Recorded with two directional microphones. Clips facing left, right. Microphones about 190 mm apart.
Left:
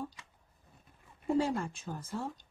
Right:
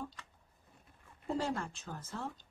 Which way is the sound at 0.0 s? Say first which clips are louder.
Left 3 dB; 15° left (ahead or behind).